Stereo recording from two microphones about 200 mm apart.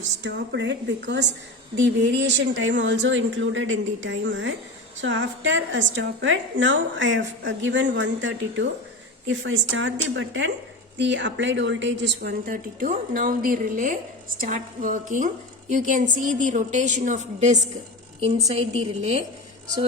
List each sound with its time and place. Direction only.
0.2 s a woman's voice: 60° right (ahead or behind); by 17.6 s 35° right (ahead or behind)